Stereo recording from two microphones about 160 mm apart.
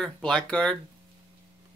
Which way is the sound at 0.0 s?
5° left (ahead or behind).